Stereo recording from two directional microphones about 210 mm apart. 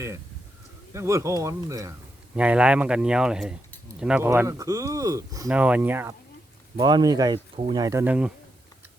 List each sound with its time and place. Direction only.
0.9 s speech: 15° right (ahead or behind)
6.7 s speech: 20° right (ahead or behind)